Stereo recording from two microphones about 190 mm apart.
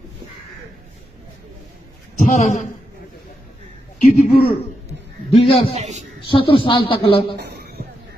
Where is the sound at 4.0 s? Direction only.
45° left (ahead or behind).